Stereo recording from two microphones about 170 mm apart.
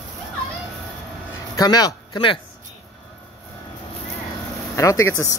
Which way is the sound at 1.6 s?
20° left (ahead or behind).